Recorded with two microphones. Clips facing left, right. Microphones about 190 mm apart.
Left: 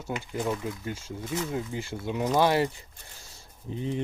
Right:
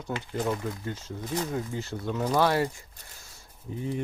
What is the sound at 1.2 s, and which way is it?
Speech, 40° right (ahead or behind).